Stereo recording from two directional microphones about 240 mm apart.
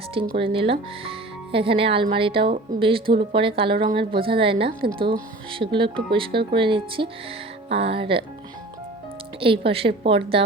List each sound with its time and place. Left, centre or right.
0.3 s speech: right
9.4 s speech: right